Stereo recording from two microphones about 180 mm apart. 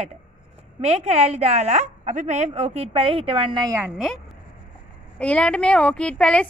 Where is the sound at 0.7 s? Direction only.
35° right (ahead or behind).